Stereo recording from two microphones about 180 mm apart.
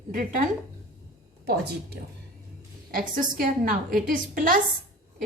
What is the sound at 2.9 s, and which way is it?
A woman's voice, 50° right (ahead or behind).